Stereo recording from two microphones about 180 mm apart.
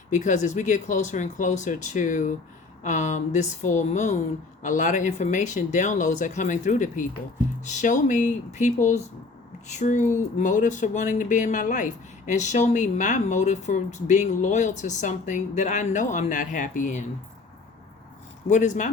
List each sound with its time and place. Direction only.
0.1 s speech: 45° left (ahead or behind)
18.4 s speech: 45° left (ahead or behind)